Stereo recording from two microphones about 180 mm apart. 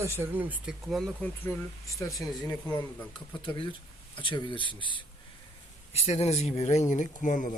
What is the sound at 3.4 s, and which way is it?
Speech, 25° left (ahead or behind).